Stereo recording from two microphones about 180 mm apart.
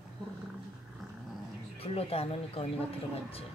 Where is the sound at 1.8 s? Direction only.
35° left (ahead or behind).